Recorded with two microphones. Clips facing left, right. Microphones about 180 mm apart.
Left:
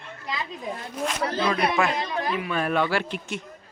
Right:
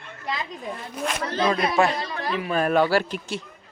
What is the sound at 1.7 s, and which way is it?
Speech, 30° right (ahead or behind).